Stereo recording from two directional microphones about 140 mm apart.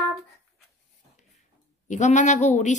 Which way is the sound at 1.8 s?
60° left (ahead or behind).